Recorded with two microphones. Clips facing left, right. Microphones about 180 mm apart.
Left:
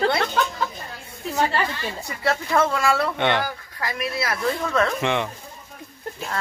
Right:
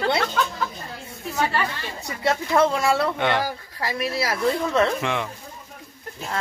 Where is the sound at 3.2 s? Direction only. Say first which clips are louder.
Left 1 dB; centre (ahead or behind).